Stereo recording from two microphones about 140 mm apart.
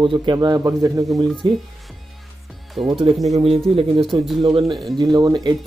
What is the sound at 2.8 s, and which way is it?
Speech, 40° right (ahead or behind).